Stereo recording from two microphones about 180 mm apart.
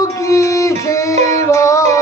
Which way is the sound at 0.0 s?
15° left (ahead or behind).